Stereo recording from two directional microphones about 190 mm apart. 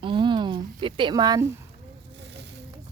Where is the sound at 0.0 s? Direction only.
25° right (ahead or behind).